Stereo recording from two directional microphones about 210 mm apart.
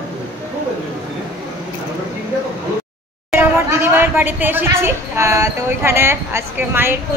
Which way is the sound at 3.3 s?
10° right (ahead or behind).